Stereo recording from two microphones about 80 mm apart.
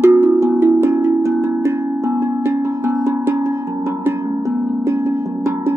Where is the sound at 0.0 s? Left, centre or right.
Right.